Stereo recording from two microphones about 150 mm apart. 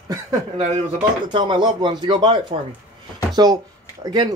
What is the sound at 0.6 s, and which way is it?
Speech, 45° right (ahead or behind).